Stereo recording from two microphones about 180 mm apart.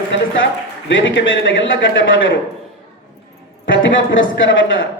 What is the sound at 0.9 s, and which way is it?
A man's voice, 90° left.